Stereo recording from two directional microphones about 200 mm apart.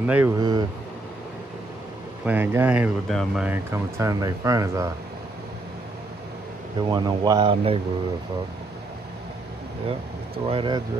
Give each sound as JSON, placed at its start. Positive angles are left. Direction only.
{"t": 0.0, "sound": "speech", "side_deg": -10}
{"t": 2.2, "sound": "speech", "side_deg": -10}
{"t": 6.9, "sound": "speech", "side_deg": -20}
{"t": 10.4, "sound": "speech", "side_deg": -25}